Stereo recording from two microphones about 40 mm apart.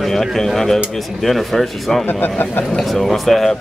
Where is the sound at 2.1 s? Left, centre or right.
Left.